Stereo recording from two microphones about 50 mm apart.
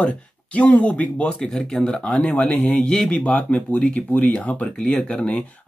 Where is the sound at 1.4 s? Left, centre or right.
Centre.